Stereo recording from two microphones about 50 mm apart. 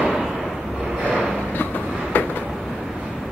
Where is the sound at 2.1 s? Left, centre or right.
Left.